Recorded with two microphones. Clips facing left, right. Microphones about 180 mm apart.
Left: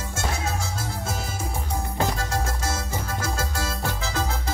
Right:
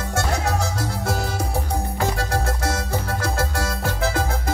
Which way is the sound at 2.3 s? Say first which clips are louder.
Right 4 dB; 60° right (ahead or behind).